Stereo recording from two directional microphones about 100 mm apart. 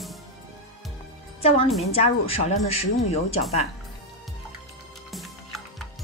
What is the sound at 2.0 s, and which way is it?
A woman's voice, 90° left.